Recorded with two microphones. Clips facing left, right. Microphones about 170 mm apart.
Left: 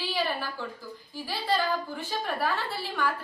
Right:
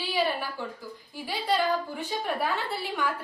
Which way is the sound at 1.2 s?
15° right (ahead or behind).